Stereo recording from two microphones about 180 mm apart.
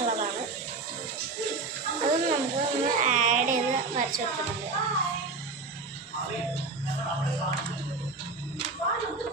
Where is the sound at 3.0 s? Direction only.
45° right (ahead or behind).